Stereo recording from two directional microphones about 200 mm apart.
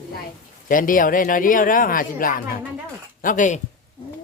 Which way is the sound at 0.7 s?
45° left (ahead or behind).